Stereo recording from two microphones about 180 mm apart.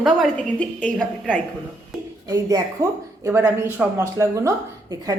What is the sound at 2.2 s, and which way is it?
A woman's voice, 20° right (ahead or behind).